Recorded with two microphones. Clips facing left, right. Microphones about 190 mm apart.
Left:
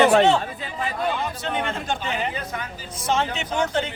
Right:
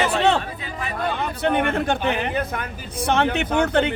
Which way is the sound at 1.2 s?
60° right (ahead or behind).